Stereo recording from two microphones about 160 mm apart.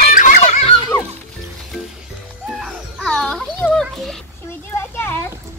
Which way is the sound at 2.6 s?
5° left (ahead or behind).